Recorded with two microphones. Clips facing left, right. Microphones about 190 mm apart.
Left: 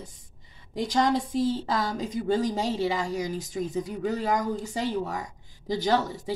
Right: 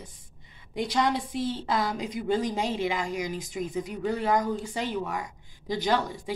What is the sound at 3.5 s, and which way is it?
Speech, 15° right (ahead or behind).